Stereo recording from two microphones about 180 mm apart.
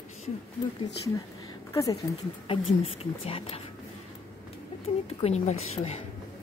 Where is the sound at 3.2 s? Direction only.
30° left (ahead or behind).